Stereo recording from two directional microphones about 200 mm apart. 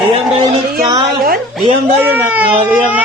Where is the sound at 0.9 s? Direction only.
20° right (ahead or behind).